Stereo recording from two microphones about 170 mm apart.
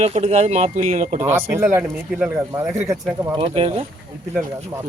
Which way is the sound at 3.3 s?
35° right (ahead or behind).